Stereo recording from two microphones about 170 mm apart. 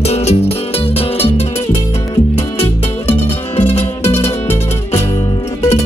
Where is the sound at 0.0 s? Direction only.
40° left (ahead or behind).